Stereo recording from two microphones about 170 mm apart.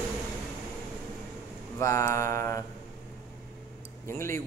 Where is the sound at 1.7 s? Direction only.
15° left (ahead or behind).